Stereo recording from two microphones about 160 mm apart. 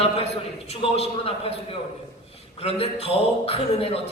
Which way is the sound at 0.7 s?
40° left (ahead or behind).